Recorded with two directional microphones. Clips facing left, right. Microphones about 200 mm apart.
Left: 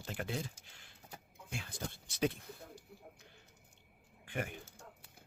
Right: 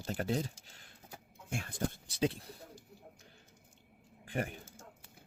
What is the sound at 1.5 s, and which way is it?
Speech, 55° right (ahead or behind).